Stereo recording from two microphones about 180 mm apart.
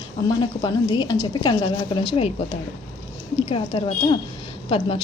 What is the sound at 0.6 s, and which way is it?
A woman's voice, 25° left (ahead or behind).